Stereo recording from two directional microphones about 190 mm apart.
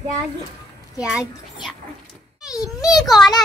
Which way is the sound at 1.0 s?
5° right (ahead or behind).